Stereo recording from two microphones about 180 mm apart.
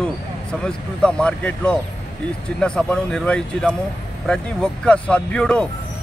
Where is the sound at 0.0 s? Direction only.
5° left (ahead or behind).